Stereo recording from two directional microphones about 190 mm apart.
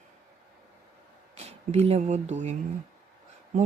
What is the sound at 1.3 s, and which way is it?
Speech, 35° right (ahead or behind).